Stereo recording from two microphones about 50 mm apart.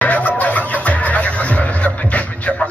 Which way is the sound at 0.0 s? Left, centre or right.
Left.